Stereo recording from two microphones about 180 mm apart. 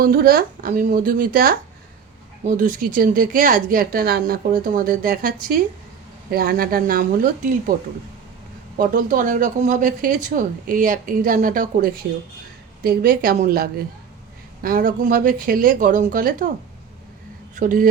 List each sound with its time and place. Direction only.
0.0 s a woman's voice: 55° right (ahead or behind)
17.5 s speech: 45° right (ahead or behind)